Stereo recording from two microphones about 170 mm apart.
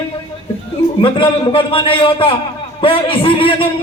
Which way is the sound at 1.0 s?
30° left (ahead or behind).